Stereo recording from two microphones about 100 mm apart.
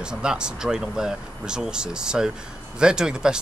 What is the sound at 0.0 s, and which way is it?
Speech, 10° right (ahead or behind).